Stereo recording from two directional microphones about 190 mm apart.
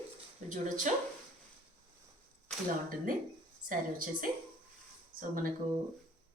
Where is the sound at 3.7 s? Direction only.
45° right (ahead or behind).